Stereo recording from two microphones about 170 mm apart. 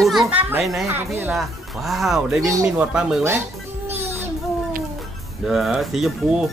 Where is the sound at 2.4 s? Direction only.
20° right (ahead or behind).